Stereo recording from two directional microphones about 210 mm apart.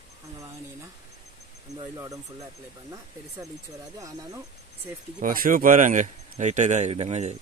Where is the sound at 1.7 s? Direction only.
15° right (ahead or behind).